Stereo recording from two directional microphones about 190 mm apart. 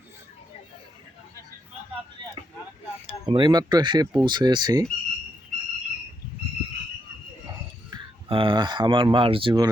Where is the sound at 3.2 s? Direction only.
25° right (ahead or behind).